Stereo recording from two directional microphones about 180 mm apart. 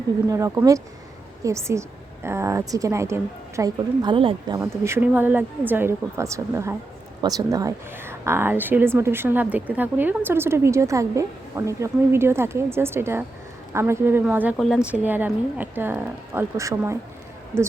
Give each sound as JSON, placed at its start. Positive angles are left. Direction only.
{"t": 0.3, "sound": "a woman's voice", "side_deg": -15}
{"t": 14.9, "sound": "a woman's voice", "side_deg": -10}